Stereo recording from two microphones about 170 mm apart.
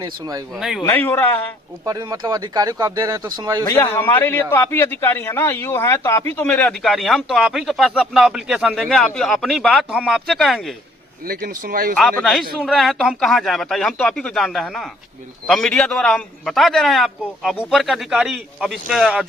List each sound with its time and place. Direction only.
0.0 s speech: 20° right (ahead or behind)
0.5 s a man's voice: centre (ahead or behind)
0.9 s a man's voice: 15° left (ahead or behind)
1.8 s speech: 20° right (ahead or behind)
3.6 s a man's voice: 15° left (ahead or behind); by 10.8 s centre (ahead or behind)
11.3 s speech: 55° right (ahead or behind)
11.9 s a man's voice: centre (ahead or behind)